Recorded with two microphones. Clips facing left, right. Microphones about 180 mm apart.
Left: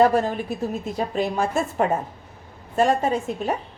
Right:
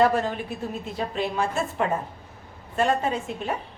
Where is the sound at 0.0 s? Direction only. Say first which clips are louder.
Left 3 dB; 40° left (ahead or behind).